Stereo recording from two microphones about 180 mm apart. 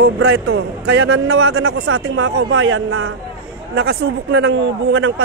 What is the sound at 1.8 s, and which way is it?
Speech, 90° right.